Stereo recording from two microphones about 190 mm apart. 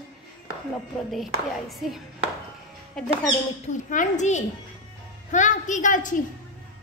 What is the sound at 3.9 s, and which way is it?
A woman's voice, 40° left (ahead or behind).